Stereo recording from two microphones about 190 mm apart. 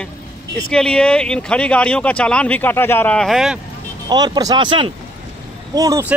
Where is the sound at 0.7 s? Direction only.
5° left (ahead or behind).